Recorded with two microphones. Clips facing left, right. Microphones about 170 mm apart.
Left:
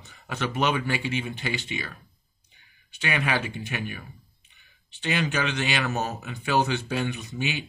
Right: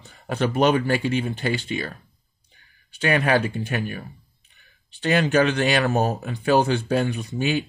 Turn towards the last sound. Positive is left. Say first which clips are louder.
# right 7 dB
turn(degrees=-45)  # may be behind; listen again after turning